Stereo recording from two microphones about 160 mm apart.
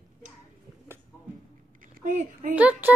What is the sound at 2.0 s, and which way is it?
Speech, 55° right (ahead or behind).